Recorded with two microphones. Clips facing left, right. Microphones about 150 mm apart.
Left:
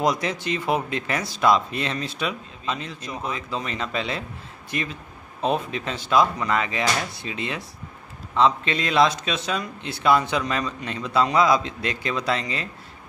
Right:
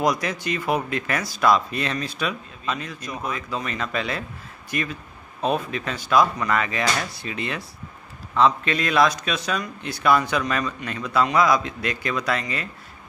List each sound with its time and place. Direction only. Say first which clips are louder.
0.0 s a man's voice: even; 25° left (ahead or behind)